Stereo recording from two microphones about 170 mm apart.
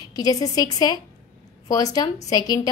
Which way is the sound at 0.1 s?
20° left (ahead or behind).